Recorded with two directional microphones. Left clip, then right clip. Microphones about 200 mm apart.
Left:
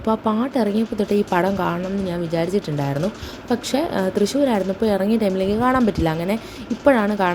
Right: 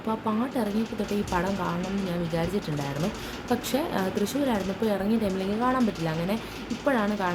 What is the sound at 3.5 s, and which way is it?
A woman's voice, 25° left (ahead or behind).